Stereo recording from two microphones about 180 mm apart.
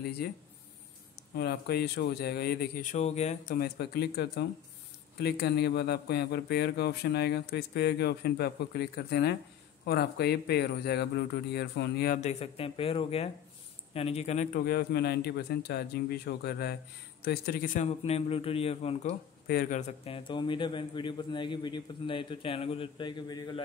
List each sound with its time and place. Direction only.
0.2 s speech: 60° left (ahead or behind); by 3.5 s 40° left (ahead or behind)
3.5 s speech: 60° left (ahead or behind)
12.2 s speech: 35° left (ahead or behind); by 17.8 s 55° left (ahead or behind)
17.8 s speech: 35° left (ahead or behind)
19.4 s speech: 60° left (ahead or behind)
19.9 s a man's voice: 30° left (ahead or behind)